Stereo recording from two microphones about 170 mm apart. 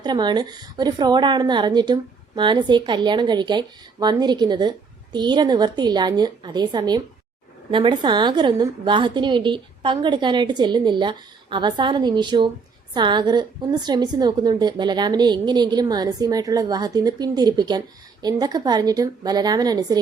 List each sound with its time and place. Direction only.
0.0 s a woman's voice: 25° right (ahead or behind)